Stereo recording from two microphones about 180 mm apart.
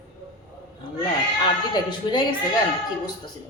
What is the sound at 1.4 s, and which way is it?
Speech, 25° left (ahead or behind).